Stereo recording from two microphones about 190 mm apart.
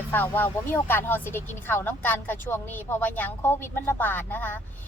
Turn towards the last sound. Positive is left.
turn(degrees=10)  # may be behind; listen again after turning